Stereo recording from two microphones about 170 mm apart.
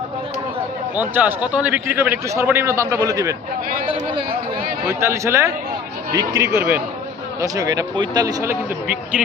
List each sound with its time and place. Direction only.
0.9 s a man's voice: 10° right (ahead or behind)
3.8 s a man's voice: 30° right (ahead or behind)
4.9 s a man's voice: 15° right (ahead or behind)